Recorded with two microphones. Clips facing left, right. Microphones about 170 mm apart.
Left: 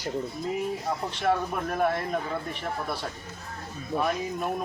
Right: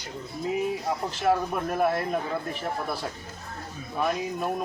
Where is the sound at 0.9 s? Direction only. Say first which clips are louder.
Right 1 dB; centre (ahead or behind).